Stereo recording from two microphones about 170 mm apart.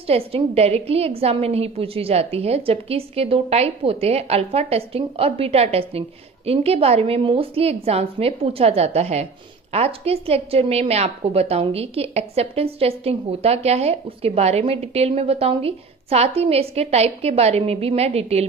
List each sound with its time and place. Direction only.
0.0 s a woman's voice: 35° right (ahead or behind)